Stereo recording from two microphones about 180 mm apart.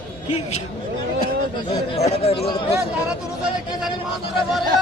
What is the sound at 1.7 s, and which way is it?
Speech, 35° left (ahead or behind).